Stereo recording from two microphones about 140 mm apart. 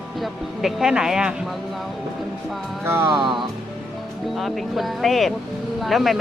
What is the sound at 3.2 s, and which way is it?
Speech, 35° right (ahead or behind).